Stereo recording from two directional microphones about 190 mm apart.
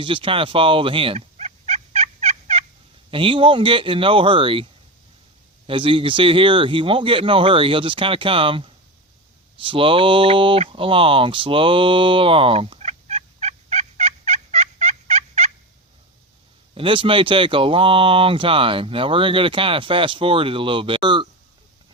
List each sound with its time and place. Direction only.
0.0 s turkey: 25° right (ahead or behind)
3.1 s speech: 30° right (ahead or behind)
5.6 s speech: 25° right (ahead or behind)
9.6 s a sound: 30° right (ahead or behind)
16.7 s speech: 30° right (ahead or behind)